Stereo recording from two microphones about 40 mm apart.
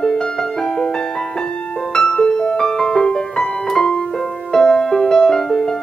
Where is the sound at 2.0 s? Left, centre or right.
Left.